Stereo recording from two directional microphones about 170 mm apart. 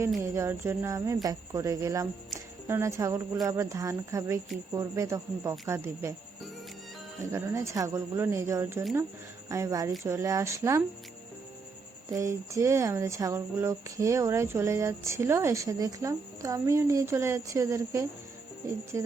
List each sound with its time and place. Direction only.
0.2 s speech: 15° right (ahead or behind)
7.3 s speech: 15° right (ahead or behind)
12.1 s speech: 15° right (ahead or behind)